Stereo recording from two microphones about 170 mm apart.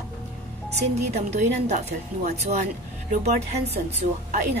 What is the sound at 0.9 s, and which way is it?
A woman's voice, 40° right (ahead or behind).